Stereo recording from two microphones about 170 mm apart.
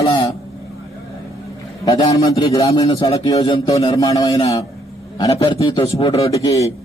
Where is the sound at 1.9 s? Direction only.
20° left (ahead or behind).